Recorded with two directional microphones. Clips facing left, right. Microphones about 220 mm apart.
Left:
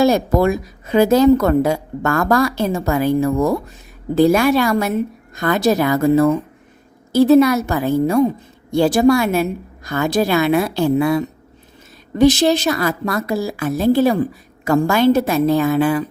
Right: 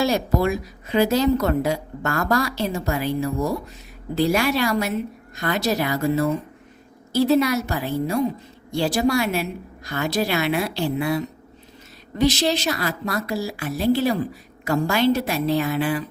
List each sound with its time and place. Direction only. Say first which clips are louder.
0.0 s a woman's voice: left 6 dB; 50° left (ahead or behind)
12.1 s a woman's voice: left 7 dB; 50° left (ahead or behind)